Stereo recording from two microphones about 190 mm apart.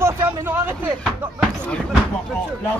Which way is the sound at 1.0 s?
5° left (ahead or behind).